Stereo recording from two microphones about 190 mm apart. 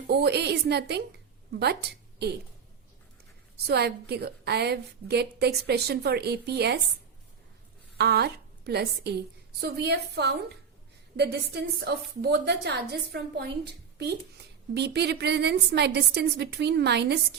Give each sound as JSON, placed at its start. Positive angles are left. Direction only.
{"t": 0.1, "sound": "a woman's voice", "side_deg": -60}
{"t": 3.7, "sound": "a woman's voice", "side_deg": -60}
{"t": 7.9, "sound": "a woman's voice", "side_deg": -60}